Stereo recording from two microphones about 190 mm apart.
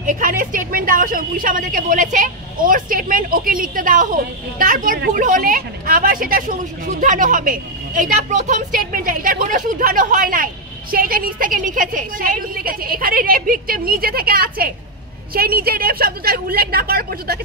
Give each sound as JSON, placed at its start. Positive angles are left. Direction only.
{"t": 0.0, "sound": "a woman's voice", "side_deg": -45}